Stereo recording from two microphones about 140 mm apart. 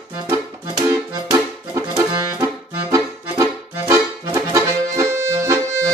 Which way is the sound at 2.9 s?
20° right (ahead or behind).